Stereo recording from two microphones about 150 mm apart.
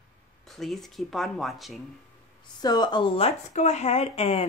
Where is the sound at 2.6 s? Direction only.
25° left (ahead or behind).